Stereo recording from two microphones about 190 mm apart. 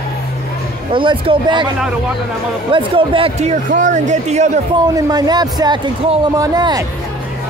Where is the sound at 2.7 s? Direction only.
30° right (ahead or behind).